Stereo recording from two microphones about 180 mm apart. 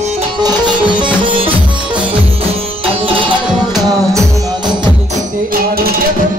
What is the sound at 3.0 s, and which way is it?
Music, 30° right (ahead or behind).